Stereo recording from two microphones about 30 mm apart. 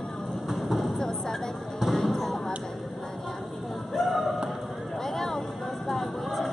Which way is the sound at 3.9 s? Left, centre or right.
Centre.